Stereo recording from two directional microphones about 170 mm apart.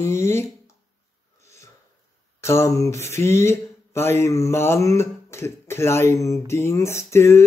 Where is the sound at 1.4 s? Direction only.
15° left (ahead or behind).